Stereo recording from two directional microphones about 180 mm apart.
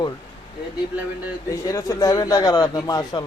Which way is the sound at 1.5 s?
20° left (ahead or behind).